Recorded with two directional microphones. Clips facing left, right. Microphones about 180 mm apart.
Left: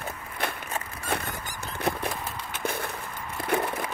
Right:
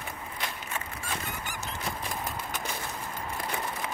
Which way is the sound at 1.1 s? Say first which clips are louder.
Left 7 dB; 65° left (ahead or behind).